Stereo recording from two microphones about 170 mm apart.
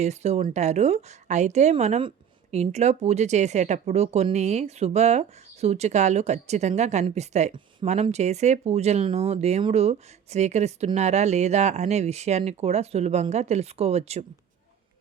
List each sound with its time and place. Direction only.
0.0 s speech: 40° right (ahead or behind)